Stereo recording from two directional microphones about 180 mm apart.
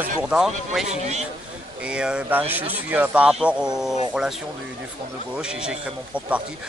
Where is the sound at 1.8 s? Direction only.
5° right (ahead or behind).